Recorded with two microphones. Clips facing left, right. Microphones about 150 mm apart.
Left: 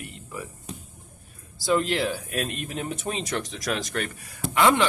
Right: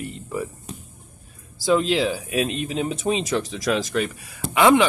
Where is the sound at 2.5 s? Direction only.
90° right.